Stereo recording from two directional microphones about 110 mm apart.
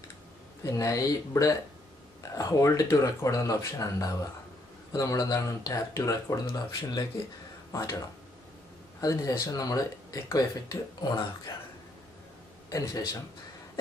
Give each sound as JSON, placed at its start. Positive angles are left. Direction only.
{"t": 0.7, "sound": "speech", "side_deg": 30}
{"t": 9.0, "sound": "speech", "side_deg": 30}
{"t": 12.6, "sound": "a man's voice", "side_deg": 30}